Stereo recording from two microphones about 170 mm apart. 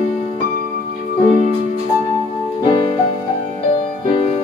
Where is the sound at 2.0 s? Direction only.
40° left (ahead or behind).